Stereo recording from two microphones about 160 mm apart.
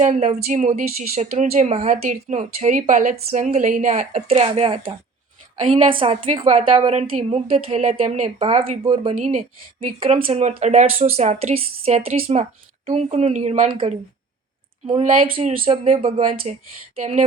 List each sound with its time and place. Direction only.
0.0 s a woman's voice: 45° right (ahead or behind)
9.1 s a woman's voice: 45° right (ahead or behind)